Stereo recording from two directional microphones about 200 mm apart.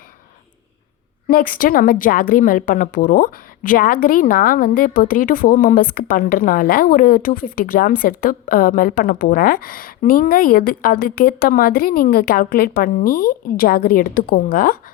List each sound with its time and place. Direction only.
1.3 s a woman's voice: 45° left (ahead or behind)